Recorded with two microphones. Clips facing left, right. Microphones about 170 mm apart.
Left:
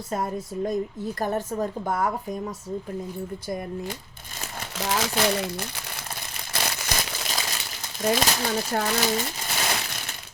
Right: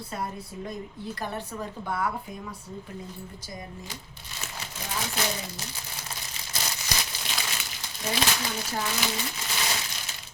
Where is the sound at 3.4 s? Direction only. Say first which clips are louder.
Left 10 dB; 60° left (ahead or behind).